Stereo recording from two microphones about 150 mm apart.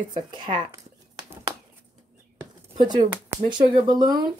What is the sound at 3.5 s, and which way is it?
Speech, 30° right (ahead or behind).